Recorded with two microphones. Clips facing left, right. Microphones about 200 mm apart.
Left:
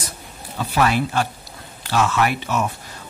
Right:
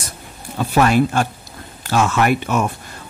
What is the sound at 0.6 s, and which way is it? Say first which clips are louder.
Speech: right 5 dB; 45° right (ahead or behind).